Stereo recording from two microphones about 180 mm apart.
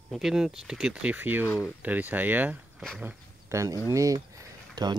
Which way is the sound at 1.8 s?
10° right (ahead or behind).